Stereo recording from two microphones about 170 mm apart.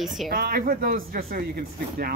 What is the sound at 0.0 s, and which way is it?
Speech, centre (ahead or behind).